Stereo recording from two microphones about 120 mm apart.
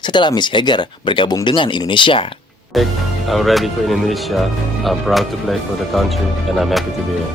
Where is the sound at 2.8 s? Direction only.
Centre (ahead or behind).